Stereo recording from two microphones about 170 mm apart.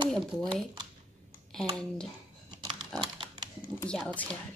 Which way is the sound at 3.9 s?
5° left (ahead or behind).